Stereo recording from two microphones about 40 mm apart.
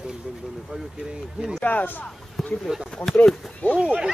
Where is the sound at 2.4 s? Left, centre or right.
Centre.